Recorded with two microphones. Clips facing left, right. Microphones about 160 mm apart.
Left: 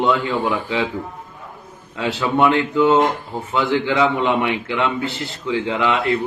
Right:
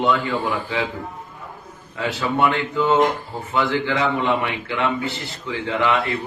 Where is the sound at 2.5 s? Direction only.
20° left (ahead or behind).